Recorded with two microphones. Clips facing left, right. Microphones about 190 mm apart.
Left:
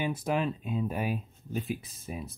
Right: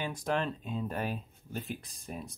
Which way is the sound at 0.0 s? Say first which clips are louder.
Left 3 dB; 10° left (ahead or behind).